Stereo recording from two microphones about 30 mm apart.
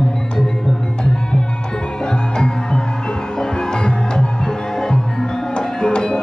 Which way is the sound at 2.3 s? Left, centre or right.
Left.